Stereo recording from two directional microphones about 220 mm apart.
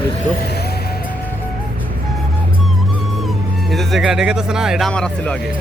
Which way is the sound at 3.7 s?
Centre (ahead or behind).